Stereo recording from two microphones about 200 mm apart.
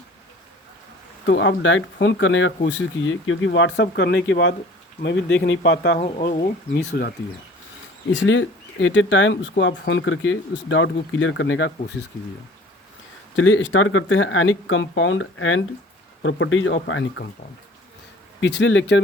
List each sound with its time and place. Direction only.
1.2 s speech: 65° left (ahead or behind)
6.0 s speech: 35° left (ahead or behind)
6.7 s speech: 50° left (ahead or behind)
8.1 s speech: 70° left (ahead or behind)
13.3 s speech: 75° left (ahead or behind)
18.3 s speech: 65° left (ahead or behind)